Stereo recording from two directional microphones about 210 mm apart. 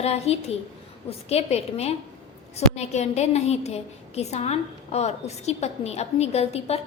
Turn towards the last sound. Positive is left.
turn(degrees=30)  # may be behind; listen again after turning